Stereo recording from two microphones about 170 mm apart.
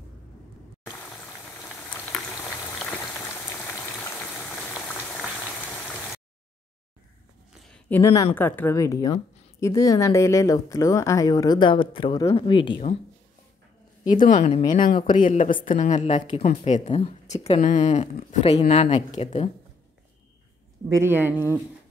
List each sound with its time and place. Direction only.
1.9 s boiling: 5° left (ahead or behind)
3.6 s boiling: 10° left (ahead or behind)
7.6 s a sound: 5° left (ahead or behind)
8.0 s a woman's voice: 20° left (ahead or behind)
14.2 s a woman's voice: 50° left (ahead or behind)
20.9 s speech: 15° right (ahead or behind)